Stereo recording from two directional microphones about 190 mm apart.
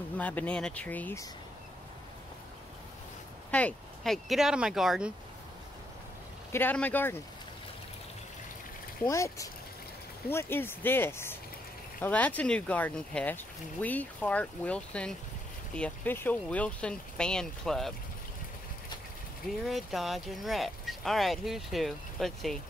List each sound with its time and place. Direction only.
0.2 s speech: 10° left (ahead or behind)
3.5 s speech: 5° left (ahead or behind)
6.5 s speech: 10° left (ahead or behind)
9.0 s speech: 15° left (ahead or behind)
19.6 s speech: centre (ahead or behind)